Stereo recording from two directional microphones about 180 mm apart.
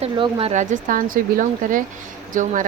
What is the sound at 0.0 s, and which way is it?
Speech, 30° right (ahead or behind).